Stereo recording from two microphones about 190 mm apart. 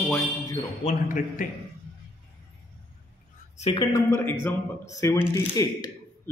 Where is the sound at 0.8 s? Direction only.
45° left (ahead or behind).